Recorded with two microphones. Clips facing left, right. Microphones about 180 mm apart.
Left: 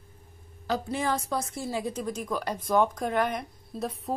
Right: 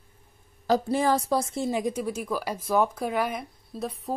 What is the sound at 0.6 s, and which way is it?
A woman's voice, 35° right (ahead or behind).